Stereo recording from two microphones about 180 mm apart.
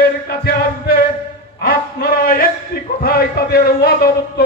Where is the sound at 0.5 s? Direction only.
55° left (ahead or behind).